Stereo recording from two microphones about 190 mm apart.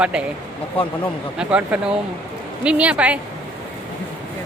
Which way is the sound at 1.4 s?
5° right (ahead or behind).